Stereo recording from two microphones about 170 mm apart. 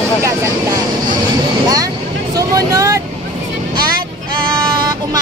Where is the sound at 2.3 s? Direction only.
20° right (ahead or behind).